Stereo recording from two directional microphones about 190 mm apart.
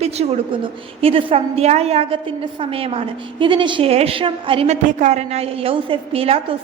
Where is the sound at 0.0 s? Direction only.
30° right (ahead or behind).